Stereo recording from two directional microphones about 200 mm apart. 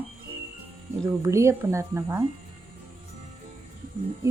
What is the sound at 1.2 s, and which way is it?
Speech, 15° right (ahead or behind).